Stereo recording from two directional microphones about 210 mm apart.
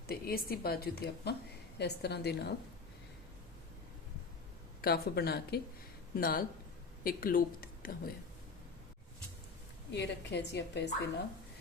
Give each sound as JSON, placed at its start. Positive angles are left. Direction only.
{"t": 0.1, "sound": "a woman's voice", "side_deg": 45}
{"t": 4.8, "sound": "a woman's voice", "side_deg": 45}
{"t": 9.9, "sound": "a woman's voice", "side_deg": 55}